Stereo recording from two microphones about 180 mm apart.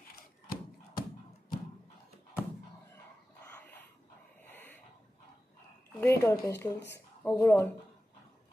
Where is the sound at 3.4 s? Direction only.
10° left (ahead or behind).